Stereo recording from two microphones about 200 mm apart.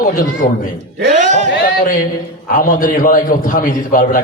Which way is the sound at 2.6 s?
45° left (ahead or behind).